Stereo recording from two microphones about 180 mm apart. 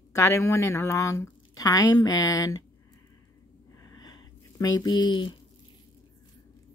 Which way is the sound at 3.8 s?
20° left (ahead or behind).